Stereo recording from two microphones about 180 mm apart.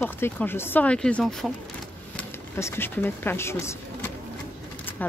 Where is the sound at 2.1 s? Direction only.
15° left (ahead or behind).